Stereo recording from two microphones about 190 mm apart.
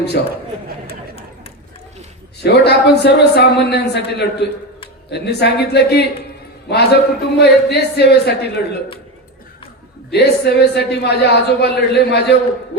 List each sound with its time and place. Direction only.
0.2 s a man's voice: 60° left (ahead or behind)
2.4 s a man's voice: 60° left (ahead or behind)
10.1 s a man's voice: 60° left (ahead or behind)